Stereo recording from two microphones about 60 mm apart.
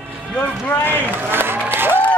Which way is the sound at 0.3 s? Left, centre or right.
Left.